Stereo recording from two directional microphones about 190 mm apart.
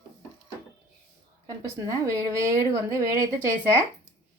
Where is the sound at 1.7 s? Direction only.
15° right (ahead or behind).